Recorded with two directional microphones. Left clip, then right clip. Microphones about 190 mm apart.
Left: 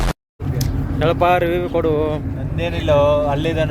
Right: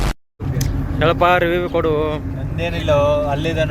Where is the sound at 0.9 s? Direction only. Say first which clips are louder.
Right 1 dB; 10° left (ahead or behind).